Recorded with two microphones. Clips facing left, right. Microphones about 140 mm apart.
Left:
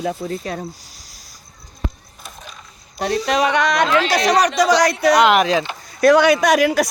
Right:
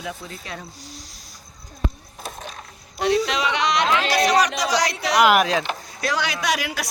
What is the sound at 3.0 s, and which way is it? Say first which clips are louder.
Speech: left 3 dB; 45° left (ahead or behind).